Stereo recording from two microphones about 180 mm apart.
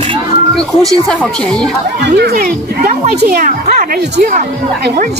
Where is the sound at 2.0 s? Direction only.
65° right (ahead or behind).